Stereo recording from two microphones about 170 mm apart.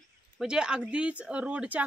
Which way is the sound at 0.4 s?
5° right (ahead or behind).